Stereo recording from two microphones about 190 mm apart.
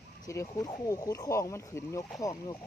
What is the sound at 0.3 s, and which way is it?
Speech, 15° left (ahead or behind).